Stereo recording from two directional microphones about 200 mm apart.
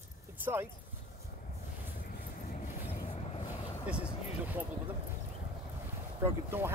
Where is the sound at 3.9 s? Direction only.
5° right (ahead or behind).